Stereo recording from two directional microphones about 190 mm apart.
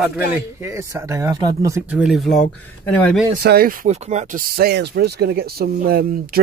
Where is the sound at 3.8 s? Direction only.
35° right (ahead or behind).